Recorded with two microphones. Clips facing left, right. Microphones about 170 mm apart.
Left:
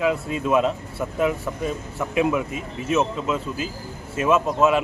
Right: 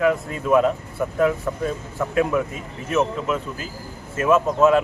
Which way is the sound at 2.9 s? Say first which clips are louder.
Right 1 dB; 20° left (ahead or behind).